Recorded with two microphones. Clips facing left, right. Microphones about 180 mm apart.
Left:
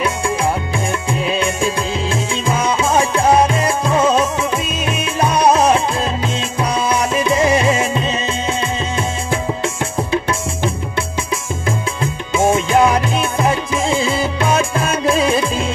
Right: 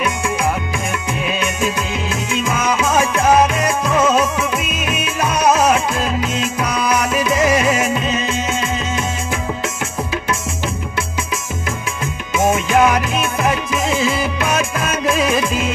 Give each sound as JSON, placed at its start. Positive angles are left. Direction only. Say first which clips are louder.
{"t": 1.2, "sound": "music", "louder": "left 2 dB", "side_deg": 30}
{"t": 12.4, "sound": "music", "louder": "left 1 dB", "side_deg": 30}